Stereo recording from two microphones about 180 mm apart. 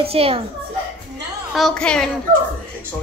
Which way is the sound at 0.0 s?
30° right (ahead or behind).